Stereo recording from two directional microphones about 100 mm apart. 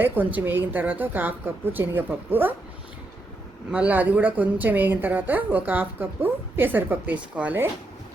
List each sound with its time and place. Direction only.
0.0 s a woman's voice: 20° right (ahead or behind)
3.7 s speech: 15° right (ahead or behind)